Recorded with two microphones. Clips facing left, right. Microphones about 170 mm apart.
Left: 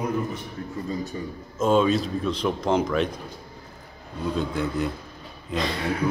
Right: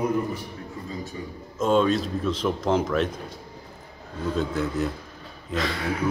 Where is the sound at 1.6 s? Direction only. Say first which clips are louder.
Left 1 dB; centre (ahead or behind).